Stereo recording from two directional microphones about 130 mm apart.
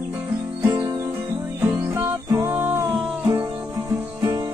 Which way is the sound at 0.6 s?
30° right (ahead or behind).